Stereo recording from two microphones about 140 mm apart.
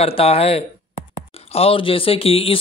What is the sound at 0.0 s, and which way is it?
Speech, 45° left (ahead or behind).